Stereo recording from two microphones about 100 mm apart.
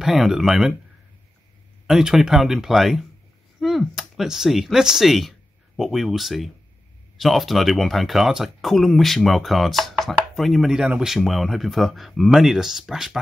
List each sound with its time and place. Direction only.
0.0 s speech: 5° right (ahead or behind)
1.9 s speech: 5° right (ahead or behind)